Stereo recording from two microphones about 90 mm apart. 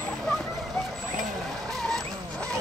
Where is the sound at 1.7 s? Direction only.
5° left (ahead or behind).